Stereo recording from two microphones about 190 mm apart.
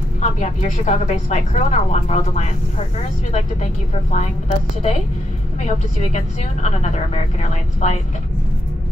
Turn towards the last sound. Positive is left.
turn(degrees=35)  # may be behind; listen again after turning